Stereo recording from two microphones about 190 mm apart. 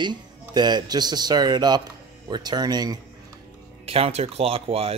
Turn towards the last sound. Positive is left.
turn(degrees=-30)  # may be behind; listen again after turning